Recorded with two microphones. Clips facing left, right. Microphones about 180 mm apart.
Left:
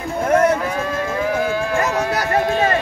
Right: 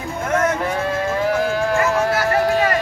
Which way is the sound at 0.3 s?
35° left (ahead or behind).